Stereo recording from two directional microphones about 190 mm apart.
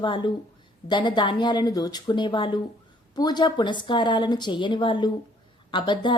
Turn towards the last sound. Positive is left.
turn(degrees=25)  # may be behind; listen again after turning